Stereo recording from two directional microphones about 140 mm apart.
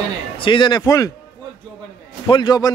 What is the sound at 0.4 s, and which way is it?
Speech, 35° left (ahead or behind).